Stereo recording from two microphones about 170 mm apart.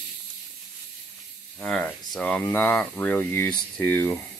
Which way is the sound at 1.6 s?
5° left (ahead or behind).